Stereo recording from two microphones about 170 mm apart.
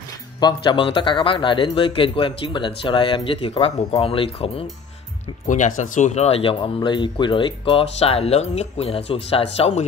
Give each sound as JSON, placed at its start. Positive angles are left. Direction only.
{"t": 0.4, "sound": "speech", "side_deg": 25}
{"t": 5.5, "sound": "speech", "side_deg": 45}